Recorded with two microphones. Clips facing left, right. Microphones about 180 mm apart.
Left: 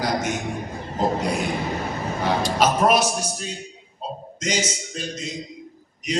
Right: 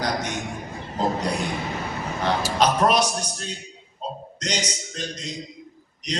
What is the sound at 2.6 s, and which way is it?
Speech, 5° left (ahead or behind).